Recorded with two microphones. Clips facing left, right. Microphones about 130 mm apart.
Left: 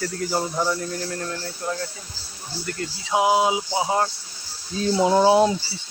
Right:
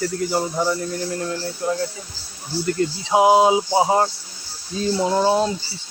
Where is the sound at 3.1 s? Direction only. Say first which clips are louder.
Right 5 dB; 25° right (ahead or behind).